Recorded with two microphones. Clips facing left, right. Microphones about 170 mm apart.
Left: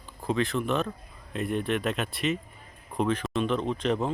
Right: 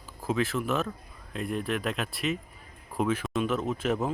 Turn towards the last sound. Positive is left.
turn(degrees=-5)  # may be behind; listen again after turning